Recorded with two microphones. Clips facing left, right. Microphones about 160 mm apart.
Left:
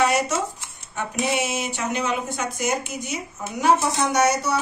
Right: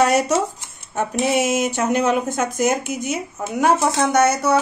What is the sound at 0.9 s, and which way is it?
Speech, 45° right (ahead or behind).